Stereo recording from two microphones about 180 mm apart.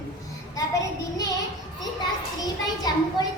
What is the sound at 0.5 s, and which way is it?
Child singing, 20° left (ahead or behind).